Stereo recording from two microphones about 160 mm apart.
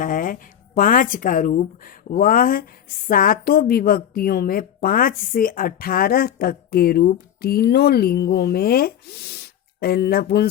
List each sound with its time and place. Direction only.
0.0 s a woman's voice: 55° left (ahead or behind); by 9.4 s 90° left
9.8 s speech: 80° left